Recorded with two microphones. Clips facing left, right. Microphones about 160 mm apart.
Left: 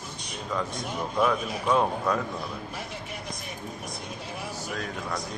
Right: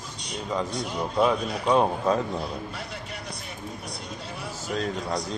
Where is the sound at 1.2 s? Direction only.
30° right (ahead or behind).